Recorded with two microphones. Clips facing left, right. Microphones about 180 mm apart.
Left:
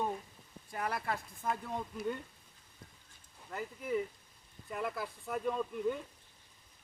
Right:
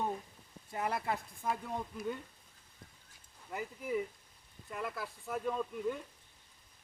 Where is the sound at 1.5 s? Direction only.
5° right (ahead or behind).